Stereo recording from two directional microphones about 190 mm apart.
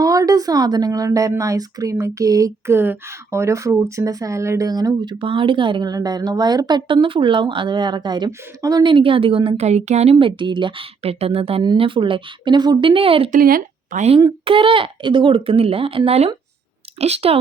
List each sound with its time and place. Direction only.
0.0 s a woman's voice: 20° right (ahead or behind)
13.3 s speech: 45° right (ahead or behind)
14.2 s a woman's voice: 25° right (ahead or behind)